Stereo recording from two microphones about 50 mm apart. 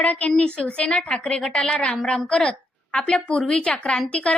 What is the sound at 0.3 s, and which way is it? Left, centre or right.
A woman's voice, centre.